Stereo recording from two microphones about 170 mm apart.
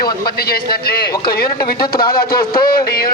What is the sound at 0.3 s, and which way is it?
Speech, 65° left (ahead or behind).